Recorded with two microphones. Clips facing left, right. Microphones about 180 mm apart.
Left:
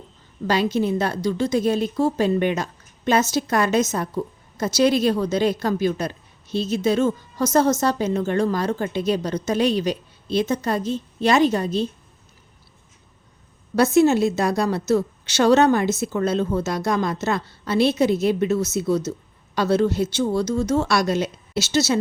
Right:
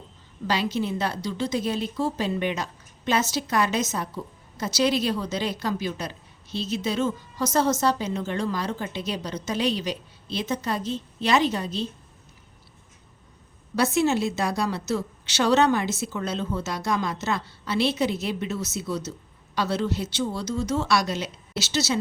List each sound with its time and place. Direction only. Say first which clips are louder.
0.4 s a woman's voice: left 5 dB; 50° left (ahead or behind)
13.7 s a woman's voice: left 6 dB; 45° left (ahead or behind)